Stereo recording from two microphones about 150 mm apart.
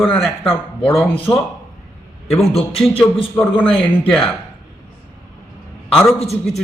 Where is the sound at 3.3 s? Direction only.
10° left (ahead or behind).